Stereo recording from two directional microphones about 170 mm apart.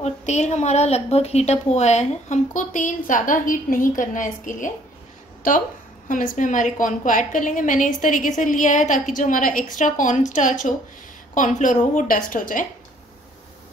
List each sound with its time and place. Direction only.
0.0 s a woman's voice: 40° left (ahead or behind)
6.0 s a woman's voice: 50° left (ahead or behind)